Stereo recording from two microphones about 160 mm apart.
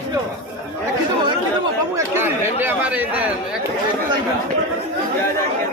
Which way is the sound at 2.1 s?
15° right (ahead or behind).